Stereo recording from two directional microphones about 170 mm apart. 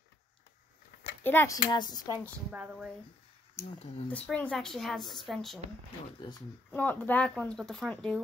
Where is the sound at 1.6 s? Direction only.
25° left (ahead or behind).